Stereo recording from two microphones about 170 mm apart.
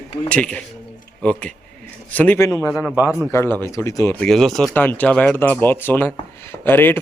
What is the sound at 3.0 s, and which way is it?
Speech, 10° right (ahead or behind).